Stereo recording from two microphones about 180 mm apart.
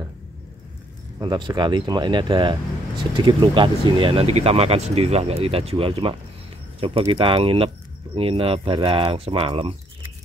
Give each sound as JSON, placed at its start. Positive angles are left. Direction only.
{"t": 1.2, "sound": "speech", "side_deg": -25}